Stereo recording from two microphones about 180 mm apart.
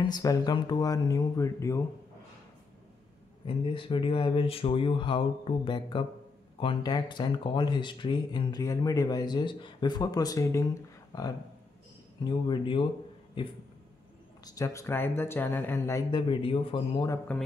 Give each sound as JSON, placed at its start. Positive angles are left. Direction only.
{"t": 0.0, "sound": "speech", "side_deg": 20}
{"t": 3.4, "sound": "speech", "side_deg": 30}